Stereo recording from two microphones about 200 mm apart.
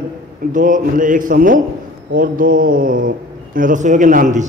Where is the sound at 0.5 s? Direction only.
40° right (ahead or behind).